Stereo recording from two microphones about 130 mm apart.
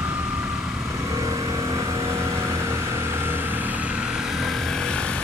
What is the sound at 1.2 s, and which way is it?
Vehicle, 25° right (ahead or behind).